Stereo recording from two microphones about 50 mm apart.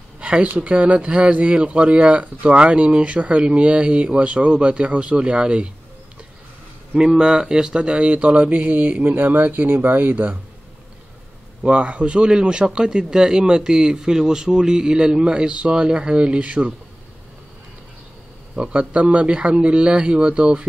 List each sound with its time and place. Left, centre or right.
0.2 s a sound: right
0.6 s speech: right
7.2 s speech: centre; by 10.3 s right
11.6 s a man's voice: right
18.6 s speech: right